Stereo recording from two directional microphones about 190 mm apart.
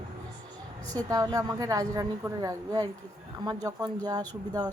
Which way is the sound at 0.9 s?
20° right (ahead or behind).